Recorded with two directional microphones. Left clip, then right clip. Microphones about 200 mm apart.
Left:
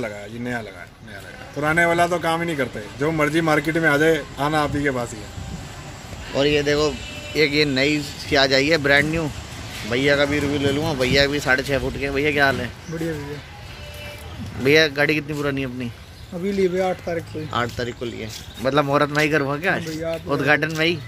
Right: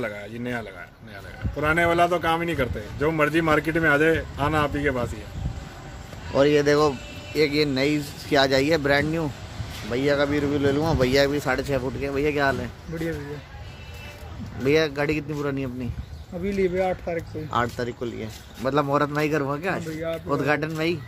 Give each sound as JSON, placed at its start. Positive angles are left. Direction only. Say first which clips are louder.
{"t": 0.0, "sound": "speech", "louder": "left 1 dB", "side_deg": -10}
{"t": 6.3, "sound": "speech", "louder": "even", "side_deg": -30}
{"t": 7.3, "sound": "speech", "louder": "left 3 dB", "side_deg": -5}
{"t": 10.5, "sound": "speech", "louder": "left 1 dB", "side_deg": -25}
{"t": 14.6, "sound": "speech", "louder": "left 5 dB", "side_deg": -5}
{"t": 17.5, "sound": "speech", "louder": "even", "side_deg": -15}
{"t": 18.6, "sound": "speech", "louder": "left 4 dB", "side_deg": -5}